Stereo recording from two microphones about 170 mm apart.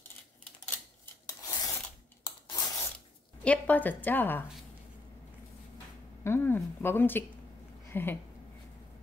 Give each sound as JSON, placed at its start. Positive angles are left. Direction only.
{"t": 1.2, "sound": "filing", "side_deg": 20}
{"t": 2.2, "sound": "rub", "side_deg": 20}
{"t": 3.4, "sound": "a woman's voice", "side_deg": 10}
{"t": 6.2, "sound": "a woman's voice", "side_deg": 15}